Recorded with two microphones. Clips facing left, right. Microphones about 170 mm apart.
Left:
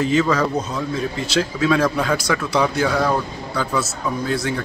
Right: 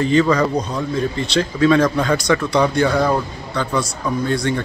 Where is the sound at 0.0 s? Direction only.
5° left (ahead or behind).